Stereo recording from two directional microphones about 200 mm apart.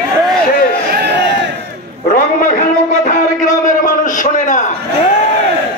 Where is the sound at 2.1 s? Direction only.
45° left (ahead or behind).